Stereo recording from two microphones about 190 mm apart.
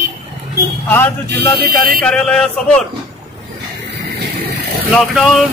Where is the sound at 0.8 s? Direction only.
10° left (ahead or behind).